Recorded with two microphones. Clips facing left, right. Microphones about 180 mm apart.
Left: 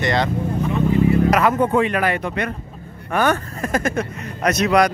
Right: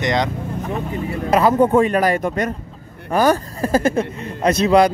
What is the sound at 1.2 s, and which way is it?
Speech, 30° right (ahead or behind).